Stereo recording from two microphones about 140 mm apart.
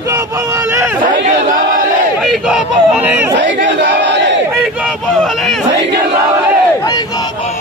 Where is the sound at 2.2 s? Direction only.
5° right (ahead or behind).